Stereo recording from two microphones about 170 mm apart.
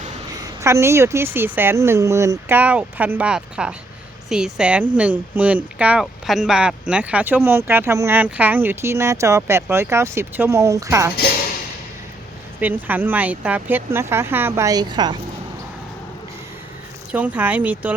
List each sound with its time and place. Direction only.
0.0 s a sound: 40° right (ahead or behind)
0.3 s a woman's voice: 15° right (ahead or behind)
12.5 s speech: 10° right (ahead or behind)
17.1 s speech: 10° right (ahead or behind)